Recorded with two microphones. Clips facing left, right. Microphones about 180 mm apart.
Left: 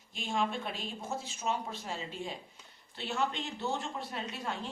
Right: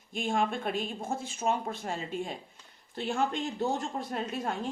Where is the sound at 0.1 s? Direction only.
50° right (ahead or behind).